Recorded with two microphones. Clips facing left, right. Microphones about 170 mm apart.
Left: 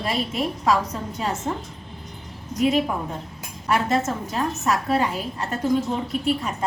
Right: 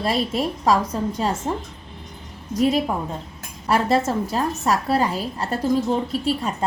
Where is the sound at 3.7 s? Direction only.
35° right (ahead or behind).